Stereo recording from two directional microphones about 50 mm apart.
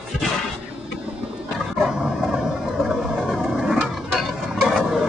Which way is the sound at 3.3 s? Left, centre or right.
Centre.